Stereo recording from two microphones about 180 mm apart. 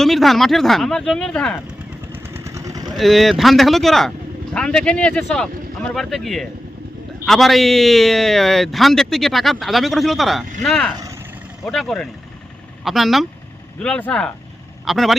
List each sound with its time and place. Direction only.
0.0 s a man's voice: centre (ahead or behind)
2.1 s vehicle: 15° right (ahead or behind)
2.9 s a man's voice: centre (ahead or behind)